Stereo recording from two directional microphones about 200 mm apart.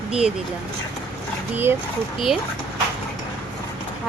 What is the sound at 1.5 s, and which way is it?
Speech, 10° right (ahead or behind).